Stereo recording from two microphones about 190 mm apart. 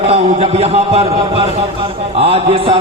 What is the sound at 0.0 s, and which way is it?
A man's voice, 35° right (ahead or behind).